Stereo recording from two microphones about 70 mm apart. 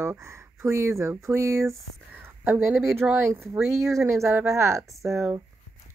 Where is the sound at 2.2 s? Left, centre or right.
Right.